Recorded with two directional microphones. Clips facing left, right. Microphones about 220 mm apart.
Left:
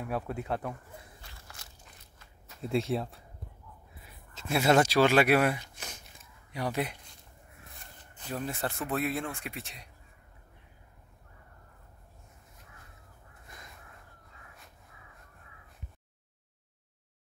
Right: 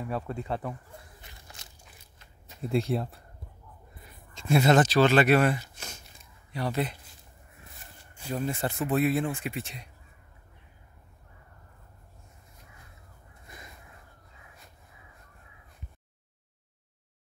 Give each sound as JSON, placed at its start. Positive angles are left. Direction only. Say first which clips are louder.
{"t": 0.0, "sound": "speech", "louder": "right 1 dB", "side_deg": 5}
{"t": 1.2, "sound": "a sound", "louder": "right 1 dB", "side_deg": -15}
{"t": 2.6, "sound": "speech", "louder": "right 2 dB", "side_deg": 0}
{"t": 5.8, "sound": "a sound", "louder": "right 1 dB", "side_deg": 15}
{"t": 6.5, "sound": "speech", "louder": "right 2 dB", "side_deg": 15}
{"t": 8.0, "sound": "speech", "louder": "right 4 dB", "side_deg": -10}
{"t": 13.5, "sound": "crow", "louder": "right 3 dB", "side_deg": -5}